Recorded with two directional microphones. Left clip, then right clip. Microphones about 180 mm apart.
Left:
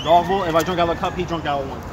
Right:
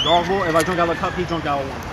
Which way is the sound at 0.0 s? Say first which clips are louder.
Left 1 dB; 5° left (ahead or behind).